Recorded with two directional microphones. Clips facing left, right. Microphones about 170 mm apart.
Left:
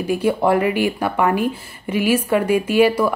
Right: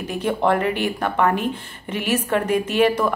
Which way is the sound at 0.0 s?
10° left (ahead or behind).